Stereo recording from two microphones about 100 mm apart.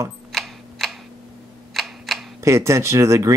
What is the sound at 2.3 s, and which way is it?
Speech, 30° right (ahead or behind).